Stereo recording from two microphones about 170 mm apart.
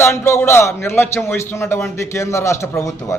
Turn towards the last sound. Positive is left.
turn(degrees=15)  # may be behind; listen again after turning